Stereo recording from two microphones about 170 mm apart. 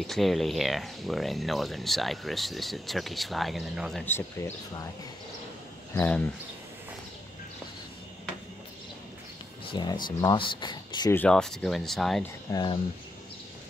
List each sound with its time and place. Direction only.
0.0 s speech: centre (ahead or behind)
4.0 s speech: 15° left (ahead or behind)
5.9 s speech: 10° left (ahead or behind)
9.7 s speech: 25° left (ahead or behind)
11.1 s speech: 5° left (ahead or behind)
12.4 s speech: 25° left (ahead or behind)